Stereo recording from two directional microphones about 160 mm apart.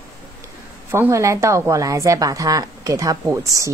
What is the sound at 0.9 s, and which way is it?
A woman's voice, 15° right (ahead or behind).